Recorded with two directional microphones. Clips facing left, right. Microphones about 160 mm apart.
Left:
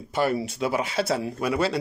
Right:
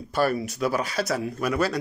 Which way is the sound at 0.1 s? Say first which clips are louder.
Even; 20° left (ahead or behind).